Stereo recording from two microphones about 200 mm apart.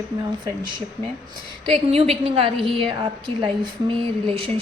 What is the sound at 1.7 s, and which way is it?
A woman's voice, 30° right (ahead or behind).